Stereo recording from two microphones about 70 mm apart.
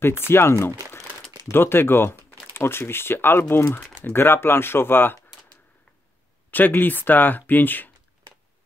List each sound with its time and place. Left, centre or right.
0.3 s speech: left
6.5 s speech: left